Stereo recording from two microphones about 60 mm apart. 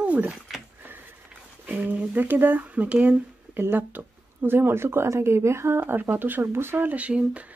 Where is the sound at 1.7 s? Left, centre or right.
Right.